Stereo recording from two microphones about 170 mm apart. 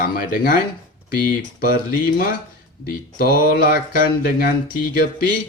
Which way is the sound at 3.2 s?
60° left (ahead or behind).